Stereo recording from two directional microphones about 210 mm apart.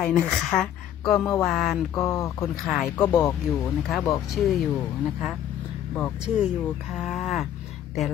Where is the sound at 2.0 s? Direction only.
15° left (ahead or behind).